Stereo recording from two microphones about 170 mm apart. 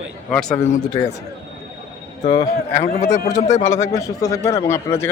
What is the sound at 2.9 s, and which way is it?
Speech, 50° left (ahead or behind).